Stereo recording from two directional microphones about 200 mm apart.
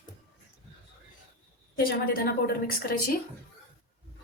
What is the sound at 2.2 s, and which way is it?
Speech, 50° left (ahead or behind).